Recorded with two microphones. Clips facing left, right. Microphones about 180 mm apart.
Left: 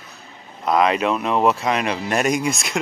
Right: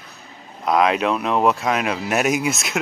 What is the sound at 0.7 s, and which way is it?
Speech, centre (ahead or behind).